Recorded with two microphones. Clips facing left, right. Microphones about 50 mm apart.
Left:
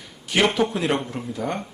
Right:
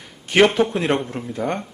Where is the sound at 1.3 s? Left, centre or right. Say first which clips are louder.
Right 4 dB; right.